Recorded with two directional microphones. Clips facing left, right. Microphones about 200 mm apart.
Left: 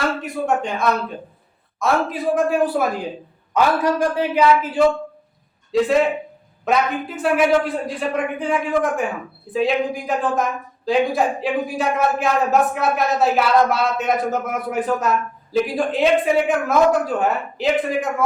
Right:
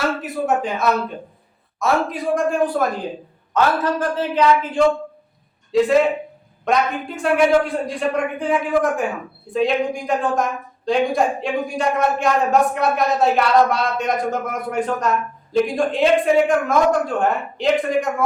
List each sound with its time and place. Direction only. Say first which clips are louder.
0.2 s a man's voice: right 1 dB; 5° right (ahead or behind)